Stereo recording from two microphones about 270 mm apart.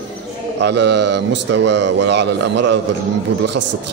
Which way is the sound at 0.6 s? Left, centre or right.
Right.